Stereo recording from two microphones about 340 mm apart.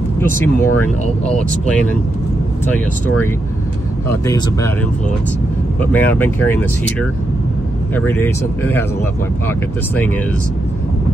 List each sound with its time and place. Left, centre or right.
0.2 s speech: centre
1.0 s speech: centre
2.6 s speech: centre
4.3 s speech: centre
5.8 s speech: centre